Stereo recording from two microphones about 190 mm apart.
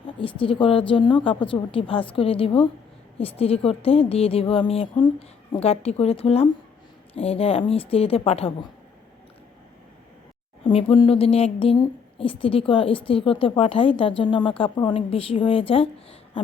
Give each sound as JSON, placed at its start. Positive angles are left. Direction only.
{"t": 0.2, "sound": "a woman's voice", "side_deg": 25}
{"t": 10.6, "sound": "speech", "side_deg": 30}